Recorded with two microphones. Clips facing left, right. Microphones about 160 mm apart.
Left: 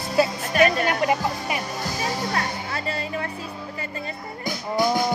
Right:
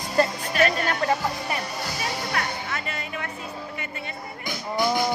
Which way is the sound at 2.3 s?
30° left (ahead or behind).